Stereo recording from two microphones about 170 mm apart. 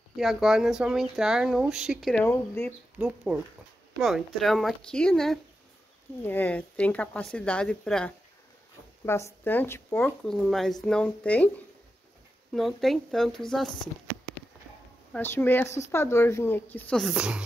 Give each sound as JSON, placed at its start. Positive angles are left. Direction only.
{"t": 0.1, "sound": "speech", "side_deg": 0}
{"t": 2.2, "sound": "speech", "side_deg": 15}
{"t": 3.0, "sound": "speech", "side_deg": -5}
{"t": 9.0, "sound": "speech", "side_deg": 15}
{"t": 10.0, "sound": "speech", "side_deg": 0}
{"t": 15.1, "sound": "speech", "side_deg": 10}